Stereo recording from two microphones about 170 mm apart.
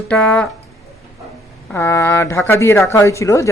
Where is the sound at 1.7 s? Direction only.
15° left (ahead or behind).